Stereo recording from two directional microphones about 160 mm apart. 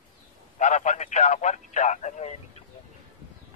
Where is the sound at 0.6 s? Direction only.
50° left (ahead or behind).